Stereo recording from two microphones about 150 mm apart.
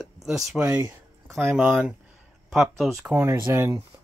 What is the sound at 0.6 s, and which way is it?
Speech, 25° right (ahead or behind).